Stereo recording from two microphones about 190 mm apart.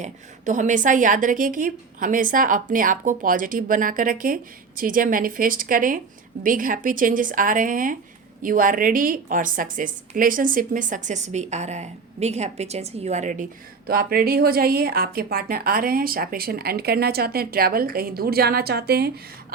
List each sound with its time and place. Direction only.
0.0 s speech: 40° right (ahead or behind)
13.8 s speech: 50° right (ahead or behind)